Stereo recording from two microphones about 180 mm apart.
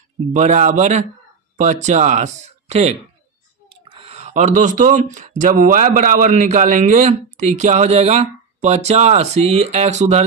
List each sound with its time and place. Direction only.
0.3 s speech: 40° right (ahead or behind)